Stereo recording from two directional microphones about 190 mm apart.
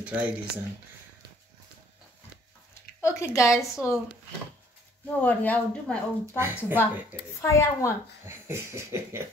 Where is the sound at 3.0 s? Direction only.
15° left (ahead or behind).